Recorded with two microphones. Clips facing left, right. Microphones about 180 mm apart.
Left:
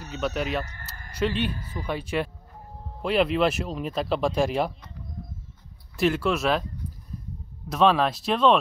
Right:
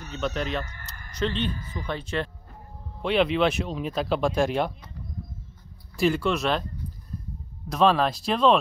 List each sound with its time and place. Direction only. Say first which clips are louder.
0.0 s speech: left 1 dB; 5° left (ahead or behind)
5.9 s speech: even; centre (ahead or behind)
7.7 s speech: even; centre (ahead or behind)